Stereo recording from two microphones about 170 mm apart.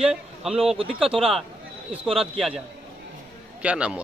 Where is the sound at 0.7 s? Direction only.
35° right (ahead or behind).